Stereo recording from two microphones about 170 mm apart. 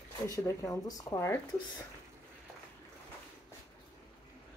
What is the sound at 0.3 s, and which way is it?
Speech, 20° left (ahead or behind).